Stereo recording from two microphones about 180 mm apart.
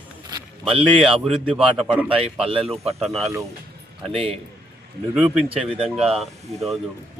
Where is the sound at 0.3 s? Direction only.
30° right (ahead or behind).